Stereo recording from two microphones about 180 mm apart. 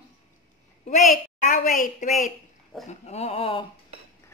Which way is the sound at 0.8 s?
45° left (ahead or behind).